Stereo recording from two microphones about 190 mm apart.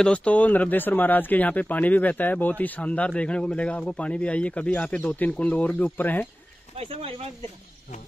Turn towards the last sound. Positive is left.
turn(degrees=-30)  # may be behind; listen again after turning